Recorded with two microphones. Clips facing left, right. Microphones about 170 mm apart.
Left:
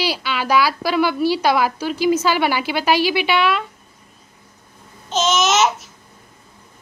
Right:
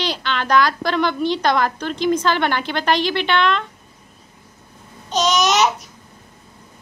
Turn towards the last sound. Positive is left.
turn(degrees=5)  # may be behind; listen again after turning